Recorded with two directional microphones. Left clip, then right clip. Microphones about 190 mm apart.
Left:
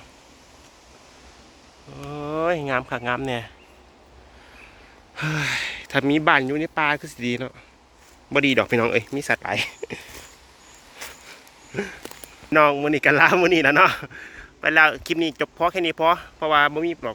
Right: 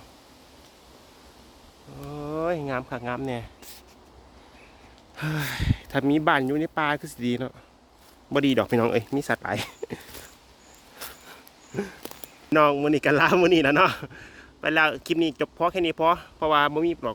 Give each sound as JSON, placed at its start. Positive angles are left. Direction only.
{"t": 2.0, "sound": "speech", "side_deg": 0}
{"t": 5.1, "sound": "speech", "side_deg": -5}
{"t": 12.5, "sound": "speech", "side_deg": -20}